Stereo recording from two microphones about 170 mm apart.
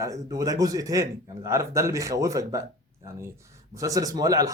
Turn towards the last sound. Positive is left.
turn(degrees=-20)  # may be behind; listen again after turning